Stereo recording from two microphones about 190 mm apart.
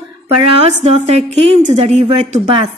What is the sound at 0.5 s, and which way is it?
Speech, 35° right (ahead or behind).